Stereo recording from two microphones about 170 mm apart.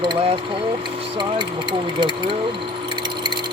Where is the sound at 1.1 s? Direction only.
30° right (ahead or behind).